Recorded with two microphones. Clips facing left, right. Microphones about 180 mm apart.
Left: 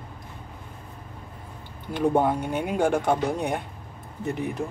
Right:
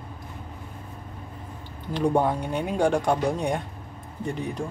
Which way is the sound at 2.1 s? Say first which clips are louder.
Left 1 dB; 10° left (ahead or behind).